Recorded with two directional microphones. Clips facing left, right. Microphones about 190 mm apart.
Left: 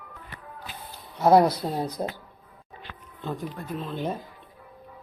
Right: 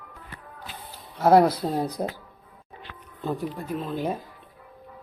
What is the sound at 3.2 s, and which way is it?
Speech, 10° right (ahead or behind).